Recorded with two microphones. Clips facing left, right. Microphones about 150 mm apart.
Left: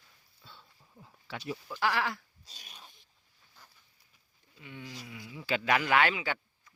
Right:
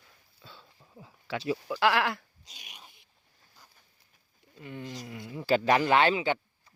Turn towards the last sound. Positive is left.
turn(degrees=-25)  # may be behind; listen again after turning